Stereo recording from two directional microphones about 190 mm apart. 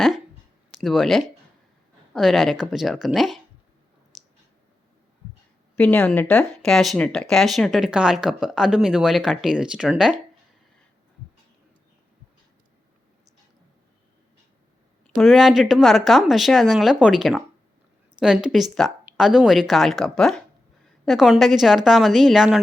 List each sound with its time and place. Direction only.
0.8 s speech: centre (ahead or behind)
5.7 s speech: 5° left (ahead or behind)
15.0 s speech: centre (ahead or behind)